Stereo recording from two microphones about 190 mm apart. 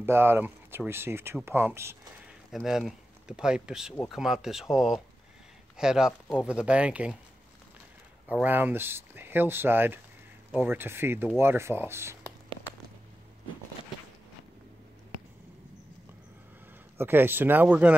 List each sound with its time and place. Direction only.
0.0 s speech: 10° right (ahead or behind)
2.5 s speech: centre (ahead or behind)
8.3 s speech: 10° right (ahead or behind)
17.0 s speech: 10° right (ahead or behind)